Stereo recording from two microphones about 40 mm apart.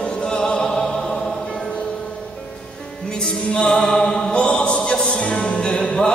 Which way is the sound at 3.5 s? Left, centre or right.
Left.